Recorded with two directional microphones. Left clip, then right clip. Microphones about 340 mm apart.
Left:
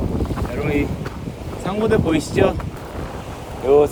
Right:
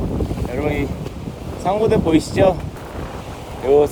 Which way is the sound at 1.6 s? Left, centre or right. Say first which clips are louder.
Right 2 dB; centre.